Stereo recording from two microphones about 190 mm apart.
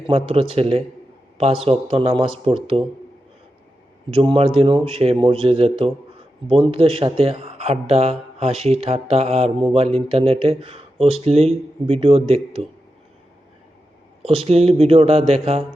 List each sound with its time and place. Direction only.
0.1 s a man's voice: 30° right (ahead or behind)
4.1 s a man's voice: 30° right (ahead or behind)
14.2 s speech: 30° right (ahead or behind)